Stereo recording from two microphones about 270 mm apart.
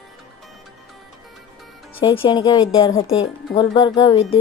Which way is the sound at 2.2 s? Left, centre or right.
Centre.